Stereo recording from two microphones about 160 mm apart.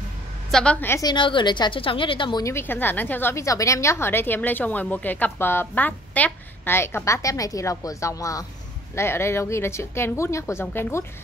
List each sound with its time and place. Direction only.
0.5 s a woman's voice: 5° left (ahead or behind)
1.0 s a woman's voice: 30° left (ahead or behind); by 11.1 s 15° left (ahead or behind)